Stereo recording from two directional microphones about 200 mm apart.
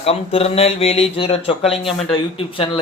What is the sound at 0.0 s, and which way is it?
Speech, 30° left (ahead or behind).